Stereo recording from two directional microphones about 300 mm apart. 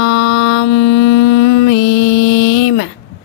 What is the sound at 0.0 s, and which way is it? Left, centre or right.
Mantra, left.